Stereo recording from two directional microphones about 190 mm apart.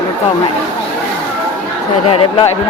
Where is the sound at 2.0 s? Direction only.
30° left (ahead or behind).